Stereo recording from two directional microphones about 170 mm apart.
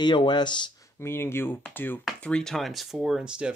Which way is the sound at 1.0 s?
15° left (ahead or behind).